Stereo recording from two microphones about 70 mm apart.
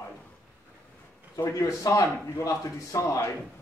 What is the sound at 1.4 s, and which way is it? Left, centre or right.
Speech, left.